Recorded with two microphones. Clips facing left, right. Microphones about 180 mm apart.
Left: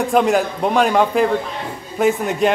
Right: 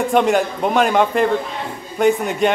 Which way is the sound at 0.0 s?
Centre (ahead or behind).